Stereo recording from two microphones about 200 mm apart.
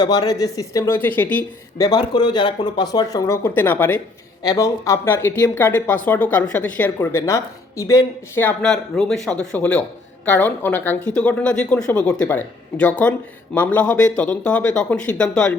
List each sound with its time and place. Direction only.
0.0 s speech: 20° left (ahead or behind)
1.9 s speech: 20° left (ahead or behind); by 15.5 s 5° left (ahead or behind)